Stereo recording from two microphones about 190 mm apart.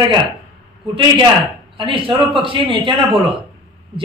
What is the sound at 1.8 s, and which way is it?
A man's voice, 25° right (ahead or behind).